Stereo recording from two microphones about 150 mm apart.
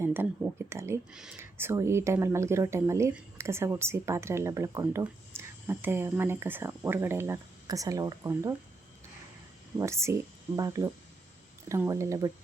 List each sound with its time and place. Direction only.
0.0 s a sound: 15° right (ahead or behind)
0.7 s speech: 20° right (ahead or behind)
1.1 s speech: 5° right (ahead or behind)
1.4 s speech: 15° right (ahead or behind)
9.7 s speech: 20° right (ahead or behind)